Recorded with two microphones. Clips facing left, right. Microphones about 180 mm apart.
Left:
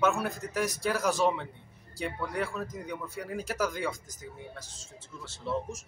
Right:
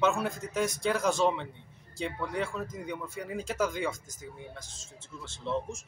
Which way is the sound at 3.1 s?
10° left (ahead or behind).